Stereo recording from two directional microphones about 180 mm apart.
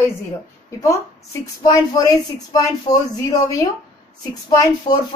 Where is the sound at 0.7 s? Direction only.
15° left (ahead or behind).